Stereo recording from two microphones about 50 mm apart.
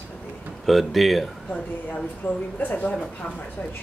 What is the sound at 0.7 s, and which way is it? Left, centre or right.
Speech, centre.